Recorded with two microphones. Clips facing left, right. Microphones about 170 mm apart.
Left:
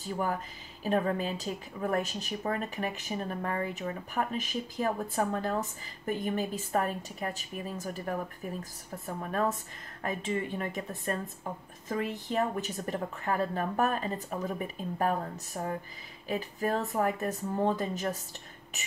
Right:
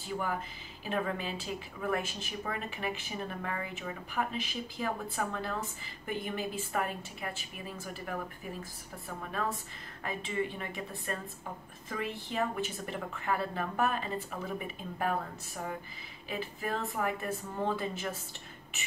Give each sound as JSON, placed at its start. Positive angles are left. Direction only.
{"t": 0.0, "sound": "a woman's voice", "side_deg": 40}